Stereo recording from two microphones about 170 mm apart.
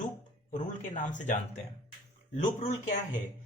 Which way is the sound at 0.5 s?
45° left (ahead or behind).